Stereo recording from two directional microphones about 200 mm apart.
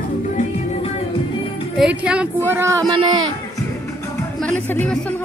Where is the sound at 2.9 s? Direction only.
25° right (ahead or behind).